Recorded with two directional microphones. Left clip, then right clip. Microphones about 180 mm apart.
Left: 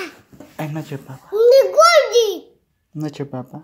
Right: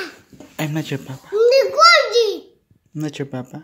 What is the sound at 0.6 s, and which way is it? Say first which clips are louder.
Speech: right 4 dB; 15° right (ahead or behind).